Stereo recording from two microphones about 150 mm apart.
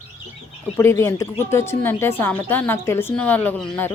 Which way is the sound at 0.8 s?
20° left (ahead or behind).